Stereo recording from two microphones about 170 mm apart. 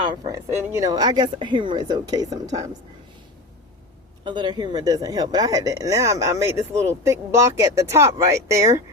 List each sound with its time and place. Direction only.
0.0 s a woman's voice: 25° right (ahead or behind)
4.2 s speech: 25° right (ahead or behind)